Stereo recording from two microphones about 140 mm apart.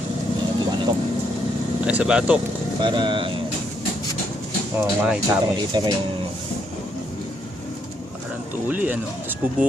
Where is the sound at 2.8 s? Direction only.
35° right (ahead or behind).